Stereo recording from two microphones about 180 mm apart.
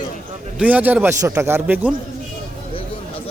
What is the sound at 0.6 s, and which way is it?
A man's voice, 10° right (ahead or behind).